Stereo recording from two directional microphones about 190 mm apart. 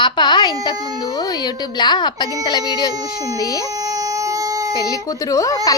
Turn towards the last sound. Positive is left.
turn(degrees=20)  # may be behind; listen again after turning